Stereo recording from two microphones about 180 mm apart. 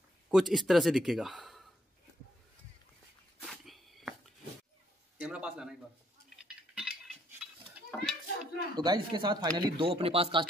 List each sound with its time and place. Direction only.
0.3 s a man's voice: centre (ahead or behind)
3.3 s dog: centre (ahead or behind)
5.1 s a man's voice: 5° right (ahead or behind)
6.4 s a sound: 5° right (ahead or behind)
7.9 s children playing: centre (ahead or behind)
8.7 s speech: 25° right (ahead or behind)